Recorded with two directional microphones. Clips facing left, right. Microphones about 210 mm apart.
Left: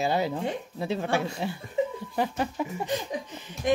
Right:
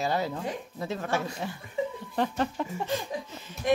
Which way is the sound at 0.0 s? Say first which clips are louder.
Left 3 dB; 15° left (ahead or behind).